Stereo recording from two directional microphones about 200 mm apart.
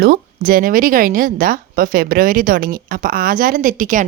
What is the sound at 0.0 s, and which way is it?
Speech, 50° right (ahead or behind).